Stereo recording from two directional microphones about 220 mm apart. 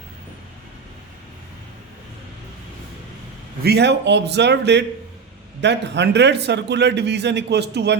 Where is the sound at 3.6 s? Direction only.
50° right (ahead or behind).